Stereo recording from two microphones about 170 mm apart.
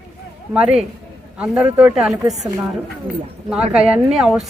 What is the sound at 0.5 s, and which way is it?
Speech, 5° right (ahead or behind).